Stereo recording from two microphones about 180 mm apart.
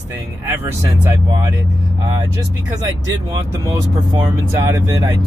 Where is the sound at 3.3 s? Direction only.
20° right (ahead or behind).